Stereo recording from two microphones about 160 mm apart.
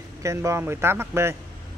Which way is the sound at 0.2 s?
20° right (ahead or behind).